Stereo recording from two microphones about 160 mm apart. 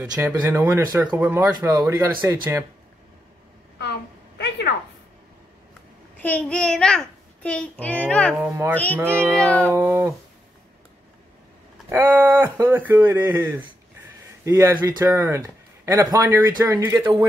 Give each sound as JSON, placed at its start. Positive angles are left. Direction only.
{"t": 0.0, "sound": "speech", "side_deg": -10}
{"t": 4.4, "sound": "a sound", "side_deg": 90}
{"t": 6.1, "sound": "a child's voice", "side_deg": 10}
{"t": 8.4, "sound": "speech", "side_deg": -10}
{"t": 8.7, "sound": "a child's voice", "side_deg": 10}
{"t": 9.2, "sound": "cat", "side_deg": 5}
{"t": 9.7, "sound": "speech", "side_deg": -15}
{"t": 11.9, "sound": "speech", "side_deg": -15}